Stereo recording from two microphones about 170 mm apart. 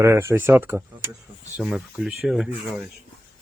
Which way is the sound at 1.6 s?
5° right (ahead or behind).